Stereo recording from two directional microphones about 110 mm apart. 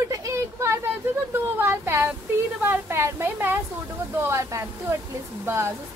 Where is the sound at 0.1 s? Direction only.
25° right (ahead or behind).